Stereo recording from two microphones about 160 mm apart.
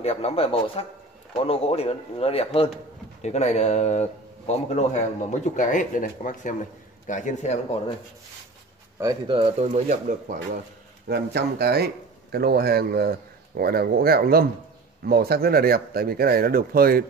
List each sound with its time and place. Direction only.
0.0 s speech: 40° left (ahead or behind)
9.3 s speech: 40° right (ahead or behind); by 10.6 s 55° right (ahead or behind)
11.1 s speech: 90° right; by 17.0 s 70° right (ahead or behind)